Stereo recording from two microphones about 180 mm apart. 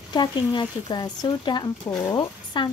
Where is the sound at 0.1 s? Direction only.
25° left (ahead or behind).